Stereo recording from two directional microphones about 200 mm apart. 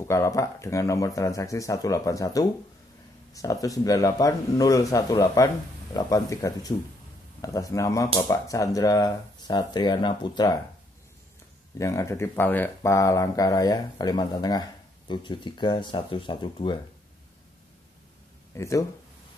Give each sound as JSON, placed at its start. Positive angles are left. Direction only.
{"t": 0.0, "sound": "speech", "side_deg": 15}
{"t": 11.8, "sound": "speech", "side_deg": 15}
{"t": 18.5, "sound": "speech", "side_deg": 15}